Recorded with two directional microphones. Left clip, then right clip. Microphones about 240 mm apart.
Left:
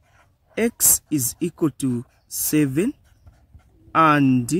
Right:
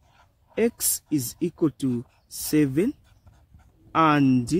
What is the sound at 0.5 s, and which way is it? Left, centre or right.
Speech, centre.